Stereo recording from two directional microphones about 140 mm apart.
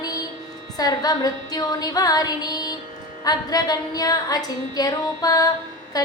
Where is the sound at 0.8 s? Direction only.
25° left (ahead or behind).